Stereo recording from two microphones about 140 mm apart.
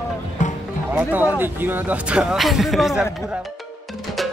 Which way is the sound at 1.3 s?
15° right (ahead or behind).